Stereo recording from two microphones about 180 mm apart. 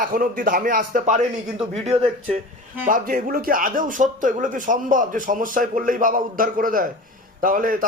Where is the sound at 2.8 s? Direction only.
50° right (ahead or behind).